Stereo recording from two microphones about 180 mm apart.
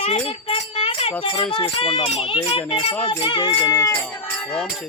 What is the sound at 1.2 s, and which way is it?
Speech, 30° left (ahead or behind).